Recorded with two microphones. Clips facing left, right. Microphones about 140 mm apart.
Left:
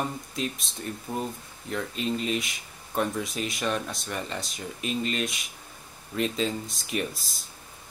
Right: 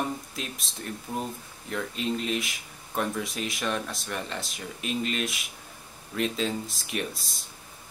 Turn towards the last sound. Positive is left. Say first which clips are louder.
# left 2 dB
turn(degrees=0)  # may be behind; listen again after turning